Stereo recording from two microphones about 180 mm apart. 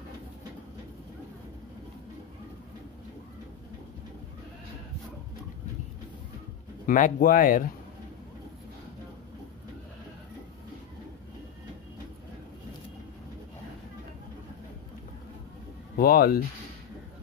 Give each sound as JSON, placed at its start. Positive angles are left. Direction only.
{"t": 6.9, "sound": "speech", "side_deg": 50}
{"t": 16.0, "sound": "speech", "side_deg": 55}